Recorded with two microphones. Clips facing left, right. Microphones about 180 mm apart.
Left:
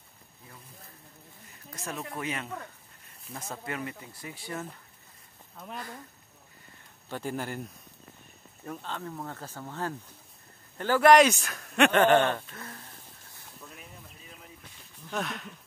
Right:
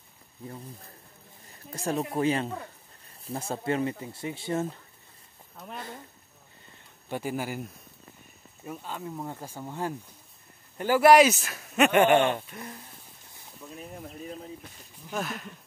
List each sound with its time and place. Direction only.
1.7 s speech: 30° right (ahead or behind)
7.1 s speech: 10° right (ahead or behind)
8.6 s speech: 10° right (ahead or behind)
13.7 s a sound: 40° right (ahead or behind)
15.0 s speech: 5° right (ahead or behind)